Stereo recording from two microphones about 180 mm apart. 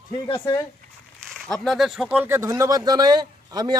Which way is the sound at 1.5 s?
Centre (ahead or behind).